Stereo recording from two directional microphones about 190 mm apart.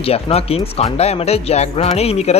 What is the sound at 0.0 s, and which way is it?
Speech, 30° left (ahead or behind).